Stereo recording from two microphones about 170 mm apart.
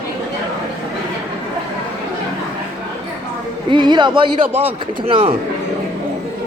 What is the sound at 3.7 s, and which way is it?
Speech, 25° right (ahead or behind).